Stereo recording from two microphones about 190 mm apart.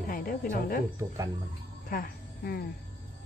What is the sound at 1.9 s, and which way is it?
Speech, 50° left (ahead or behind).